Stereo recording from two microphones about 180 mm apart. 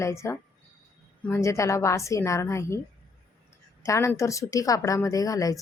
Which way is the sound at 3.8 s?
15° left (ahead or behind).